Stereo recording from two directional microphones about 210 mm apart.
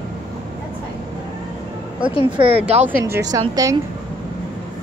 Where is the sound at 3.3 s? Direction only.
15° right (ahead or behind).